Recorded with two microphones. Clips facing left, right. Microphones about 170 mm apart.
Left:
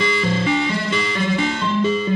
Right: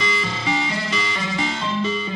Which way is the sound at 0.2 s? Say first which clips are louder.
Left 5 dB; 55° left (ahead or behind).